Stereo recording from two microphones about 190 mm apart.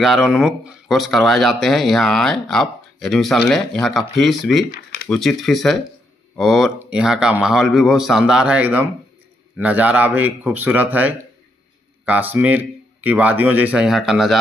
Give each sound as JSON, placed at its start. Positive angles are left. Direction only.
{"t": 0.0, "sound": "speech", "side_deg": 0}
{"t": 4.6, "sound": "speech", "side_deg": 55}
{"t": 5.1, "sound": "speech", "side_deg": 0}